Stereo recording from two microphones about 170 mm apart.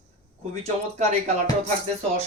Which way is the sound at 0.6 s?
40° right (ahead or behind).